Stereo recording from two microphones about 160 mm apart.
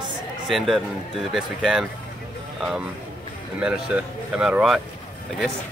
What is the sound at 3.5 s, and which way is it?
Speech, 5° right (ahead or behind).